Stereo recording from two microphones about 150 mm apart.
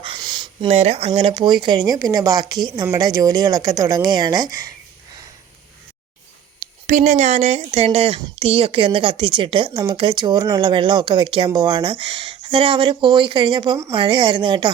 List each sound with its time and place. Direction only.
0.0 s a sound: 30° right (ahead or behind)
0.7 s speech: 45° right (ahead or behind); by 4.7 s 25° right (ahead or behind)
6.6 s speech: 55° right (ahead or behind); by 14.7 s 30° right (ahead or behind)